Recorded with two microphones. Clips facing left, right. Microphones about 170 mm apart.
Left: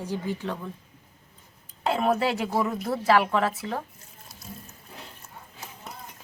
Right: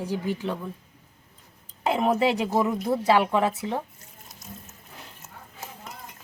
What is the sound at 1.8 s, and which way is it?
Speech, 15° right (ahead or behind).